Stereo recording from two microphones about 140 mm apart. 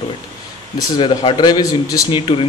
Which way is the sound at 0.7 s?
35° left (ahead or behind).